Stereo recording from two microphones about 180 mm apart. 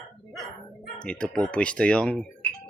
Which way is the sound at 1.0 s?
5° left (ahead or behind).